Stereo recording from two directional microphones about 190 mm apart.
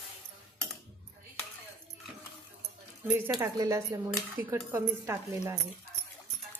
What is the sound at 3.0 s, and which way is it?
Speech, 10° right (ahead or behind).